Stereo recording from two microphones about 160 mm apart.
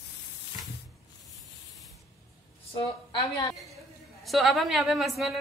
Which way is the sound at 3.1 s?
20° left (ahead or behind).